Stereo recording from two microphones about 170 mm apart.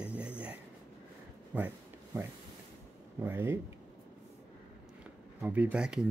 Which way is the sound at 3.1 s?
15° right (ahead or behind).